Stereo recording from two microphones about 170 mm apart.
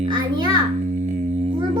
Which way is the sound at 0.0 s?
25° right (ahead or behind).